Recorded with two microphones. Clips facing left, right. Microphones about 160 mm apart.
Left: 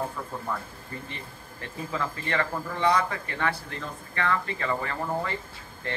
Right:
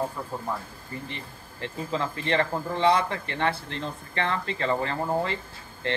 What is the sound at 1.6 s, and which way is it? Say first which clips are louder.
Speech: right 3 dB; 20° right (ahead or behind).